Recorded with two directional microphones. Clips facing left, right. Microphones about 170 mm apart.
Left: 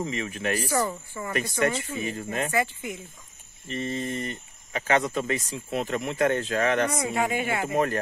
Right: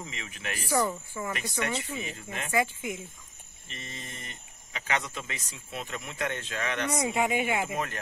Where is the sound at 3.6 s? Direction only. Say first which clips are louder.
Left 14 dB; 40° left (ahead or behind).